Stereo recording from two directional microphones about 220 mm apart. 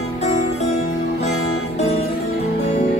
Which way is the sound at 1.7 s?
30° left (ahead or behind).